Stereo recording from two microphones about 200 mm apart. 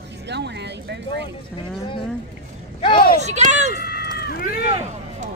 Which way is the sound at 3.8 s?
50° left (ahead or behind).